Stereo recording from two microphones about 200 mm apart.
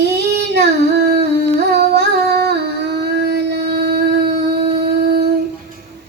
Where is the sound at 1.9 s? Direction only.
55° right (ahead or behind).